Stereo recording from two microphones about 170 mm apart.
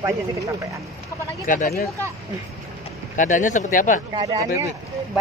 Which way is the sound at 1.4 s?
55° left (ahead or behind).